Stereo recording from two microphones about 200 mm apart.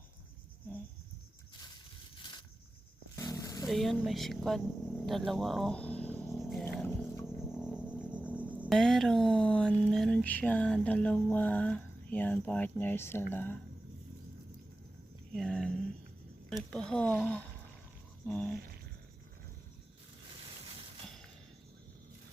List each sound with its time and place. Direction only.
3.2 s vehicle: 15° left (ahead or behind)
3.7 s speech: centre (ahead or behind)
6.4 s roaring cats: centre (ahead or behind)
6.7 s roaring cats: 10° left (ahead or behind)
8.0 s speech: 5° right (ahead or behind); by 13.6 s 10° left (ahead or behind)
15.3 s speech: 5° left (ahead or behind)